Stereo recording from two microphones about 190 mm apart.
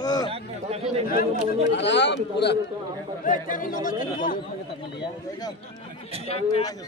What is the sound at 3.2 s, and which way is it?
Speech, 45° left (ahead or behind).